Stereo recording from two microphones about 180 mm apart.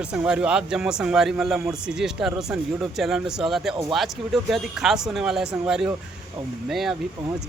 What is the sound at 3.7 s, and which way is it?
Speech, 25° right (ahead or behind).